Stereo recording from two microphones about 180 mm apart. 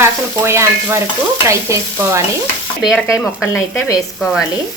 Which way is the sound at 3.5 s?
15° left (ahead or behind).